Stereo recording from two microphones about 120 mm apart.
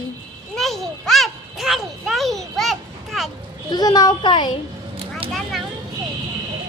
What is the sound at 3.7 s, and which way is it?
Speech, 35° left (ahead or behind).